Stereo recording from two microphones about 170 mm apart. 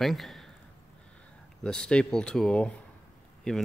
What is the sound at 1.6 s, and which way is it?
Speech, 5° left (ahead or behind).